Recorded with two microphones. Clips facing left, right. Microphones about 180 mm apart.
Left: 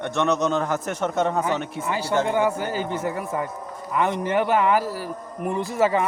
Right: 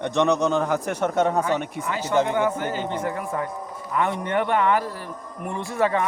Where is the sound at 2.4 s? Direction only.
10° left (ahead or behind).